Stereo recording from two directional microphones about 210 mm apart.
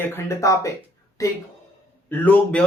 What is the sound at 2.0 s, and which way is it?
Speech, 10° left (ahead or behind).